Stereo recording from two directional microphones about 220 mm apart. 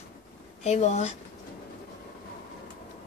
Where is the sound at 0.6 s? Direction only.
30° left (ahead or behind).